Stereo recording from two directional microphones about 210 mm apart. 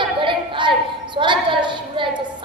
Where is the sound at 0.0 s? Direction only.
25° right (ahead or behind).